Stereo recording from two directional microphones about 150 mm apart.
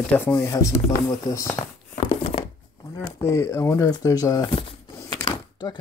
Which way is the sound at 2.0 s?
40° left (ahead or behind).